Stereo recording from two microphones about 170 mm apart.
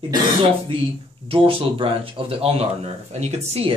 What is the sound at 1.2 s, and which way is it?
Speech, 30° right (ahead or behind).